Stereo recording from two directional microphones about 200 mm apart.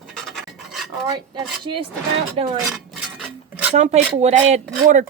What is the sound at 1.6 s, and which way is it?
Speech, 25° right (ahead or behind).